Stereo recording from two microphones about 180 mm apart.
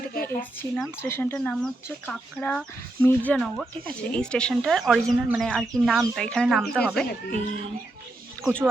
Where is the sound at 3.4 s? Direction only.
Centre (ahead or behind).